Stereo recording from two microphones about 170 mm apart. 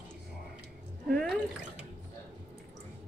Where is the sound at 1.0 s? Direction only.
Centre (ahead or behind).